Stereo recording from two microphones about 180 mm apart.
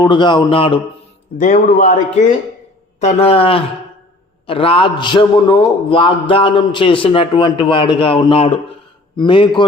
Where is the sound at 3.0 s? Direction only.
35° left (ahead or behind).